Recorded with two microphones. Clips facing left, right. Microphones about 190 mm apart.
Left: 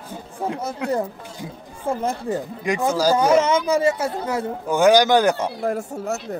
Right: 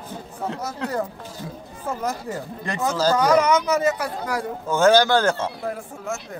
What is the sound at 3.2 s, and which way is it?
Speech, 25° left (ahead or behind).